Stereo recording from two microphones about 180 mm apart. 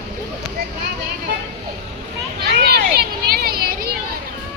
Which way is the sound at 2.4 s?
60° right (ahead or behind).